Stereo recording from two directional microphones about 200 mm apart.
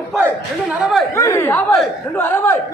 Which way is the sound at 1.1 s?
15° left (ahead or behind).